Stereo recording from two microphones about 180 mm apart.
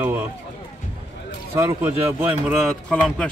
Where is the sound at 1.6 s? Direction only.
15° right (ahead or behind); by 3.2 s 5° left (ahead or behind).